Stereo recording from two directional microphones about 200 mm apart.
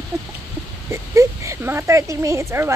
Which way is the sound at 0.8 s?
15° right (ahead or behind).